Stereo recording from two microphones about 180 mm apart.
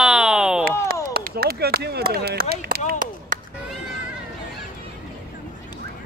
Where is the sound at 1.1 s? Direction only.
60° right (ahead or behind).